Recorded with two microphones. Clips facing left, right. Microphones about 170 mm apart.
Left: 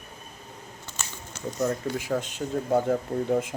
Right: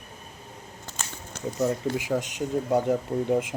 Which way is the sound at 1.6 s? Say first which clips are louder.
Right 1 dB; 15° right (ahead or behind).